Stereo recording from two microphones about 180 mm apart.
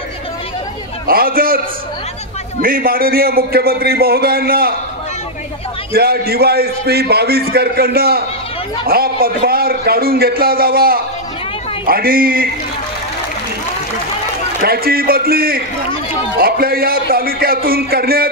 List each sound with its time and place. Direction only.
1.0 s a man's voice: 55° right (ahead or behind)
2.6 s a man's voice: 55° right (ahead or behind)
5.9 s a man's voice: 60° right (ahead or behind)
14.6 s a man's voice: 55° right (ahead or behind)